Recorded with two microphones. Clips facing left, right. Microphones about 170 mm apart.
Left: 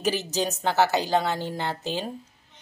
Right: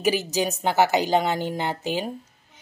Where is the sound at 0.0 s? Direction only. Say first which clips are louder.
Right 3 dB; 10° right (ahead or behind).